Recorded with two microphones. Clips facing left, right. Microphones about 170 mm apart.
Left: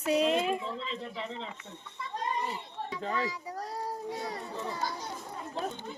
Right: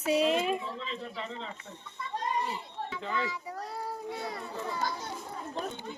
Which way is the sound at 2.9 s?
35° left (ahead or behind).